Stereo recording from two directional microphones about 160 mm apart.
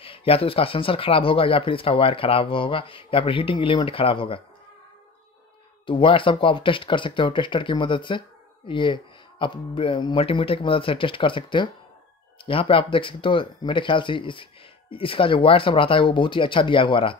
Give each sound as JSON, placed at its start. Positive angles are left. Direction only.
{"t": 0.0, "sound": "speech", "side_deg": 35}
{"t": 5.9, "sound": "speech", "side_deg": 30}